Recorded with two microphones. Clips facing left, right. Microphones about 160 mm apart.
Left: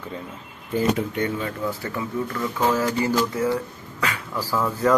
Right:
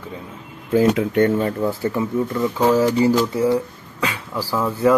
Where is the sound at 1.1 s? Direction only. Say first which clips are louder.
Right 9 dB; 55° right (ahead or behind).